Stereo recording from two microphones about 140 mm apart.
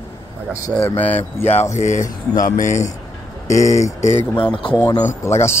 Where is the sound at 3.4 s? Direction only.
20° left (ahead or behind).